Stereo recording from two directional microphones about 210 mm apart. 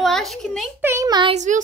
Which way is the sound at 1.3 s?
35° right (ahead or behind).